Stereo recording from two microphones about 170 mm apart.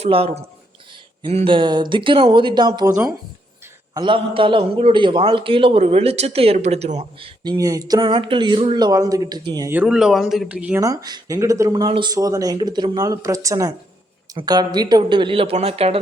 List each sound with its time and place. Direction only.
0.0 s a man's voice: 35° right (ahead or behind)
2.8 s speech: 15° right (ahead or behind)
3.9 s a man's voice: 30° right (ahead or behind)
7.5 s speech: 20° right (ahead or behind)
9.7 s speech: 5° right (ahead or behind)
10.8 s speech: 20° right (ahead or behind); by 16.0 s 35° right (ahead or behind)